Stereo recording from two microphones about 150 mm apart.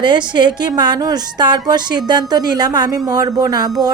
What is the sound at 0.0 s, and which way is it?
A woman's voice, 30° right (ahead or behind).